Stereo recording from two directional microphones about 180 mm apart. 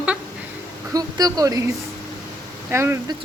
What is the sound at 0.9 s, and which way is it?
A woman's voice, 20° right (ahead or behind).